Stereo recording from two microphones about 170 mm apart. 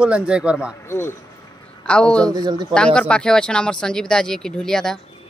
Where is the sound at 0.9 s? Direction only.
15° left (ahead or behind).